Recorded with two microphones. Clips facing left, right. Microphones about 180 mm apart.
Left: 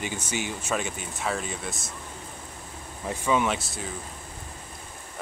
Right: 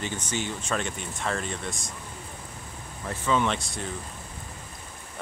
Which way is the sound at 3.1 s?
10° left (ahead or behind).